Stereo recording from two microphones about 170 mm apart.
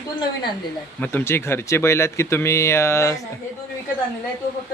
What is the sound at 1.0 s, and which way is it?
Speech, 15° left (ahead or behind).